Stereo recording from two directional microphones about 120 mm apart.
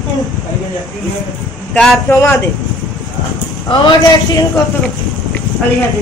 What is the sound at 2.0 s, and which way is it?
Speech, 20° left (ahead or behind).